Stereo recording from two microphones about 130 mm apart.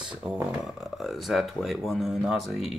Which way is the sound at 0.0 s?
10° right (ahead or behind).